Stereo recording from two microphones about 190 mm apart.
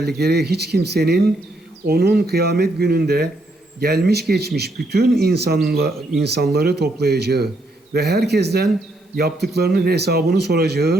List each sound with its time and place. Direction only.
0.2 s speech: 60° right (ahead or behind)